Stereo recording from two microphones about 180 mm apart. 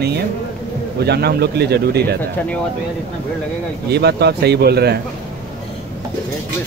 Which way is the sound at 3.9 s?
65° right (ahead or behind).